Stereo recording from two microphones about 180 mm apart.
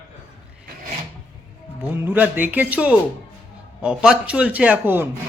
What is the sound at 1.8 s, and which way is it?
A man's voice, 10° right (ahead or behind).